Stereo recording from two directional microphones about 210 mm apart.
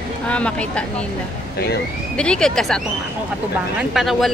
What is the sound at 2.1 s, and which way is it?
Speech, 5° left (ahead or behind).